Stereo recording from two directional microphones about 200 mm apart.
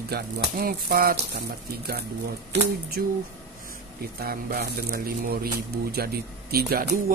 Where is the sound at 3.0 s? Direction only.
50° right (ahead or behind).